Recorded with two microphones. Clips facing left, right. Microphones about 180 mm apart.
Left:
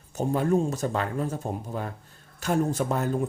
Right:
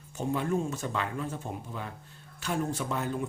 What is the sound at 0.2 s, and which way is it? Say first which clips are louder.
Speech: left 6 dB; 40° left (ahead or behind).